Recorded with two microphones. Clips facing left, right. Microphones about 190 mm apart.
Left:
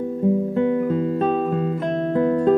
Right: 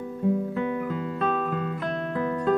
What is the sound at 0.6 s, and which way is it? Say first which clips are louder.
Music: left 8 dB; 30° left (ahead or behind).